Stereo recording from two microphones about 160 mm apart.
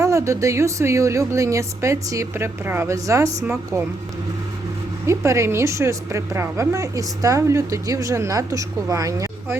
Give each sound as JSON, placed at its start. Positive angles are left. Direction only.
{"t": 0.0, "sound": "a woman's voice", "side_deg": -20}
{"t": 5.0, "sound": "a woman's voice", "side_deg": -15}